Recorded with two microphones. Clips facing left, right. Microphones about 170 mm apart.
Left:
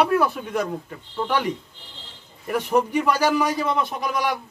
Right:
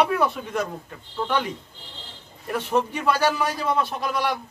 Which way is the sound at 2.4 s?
10° left (ahead or behind).